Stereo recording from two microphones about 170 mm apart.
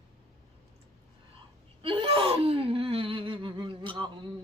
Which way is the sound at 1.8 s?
30° right (ahead or behind).